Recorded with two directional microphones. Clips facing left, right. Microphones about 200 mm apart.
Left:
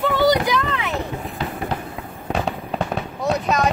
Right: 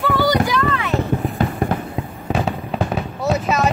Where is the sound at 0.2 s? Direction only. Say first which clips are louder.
Left 1 dB; 20° left (ahead or behind).